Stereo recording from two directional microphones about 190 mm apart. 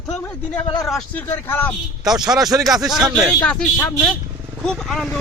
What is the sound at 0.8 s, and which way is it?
Speech, centre (ahead or behind).